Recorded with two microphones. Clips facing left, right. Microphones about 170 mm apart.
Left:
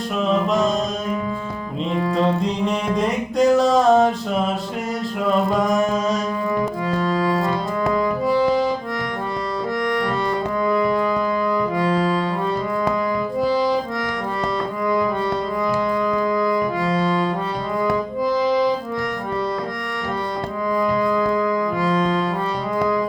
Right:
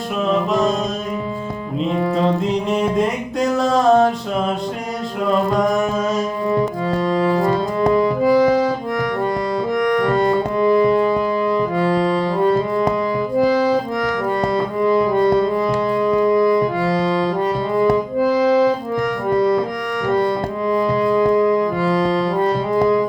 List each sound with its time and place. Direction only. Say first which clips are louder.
2.1 s music: even; centre (ahead or behind)
7.9 s music: right 5 dB; 30° right (ahead or behind)
10.6 s music: right 5 dB; 30° right (ahead or behind)
16.1 s music: right 5 dB; 25° right (ahead or behind)
20.7 s music: right 3 dB; 25° right (ahead or behind)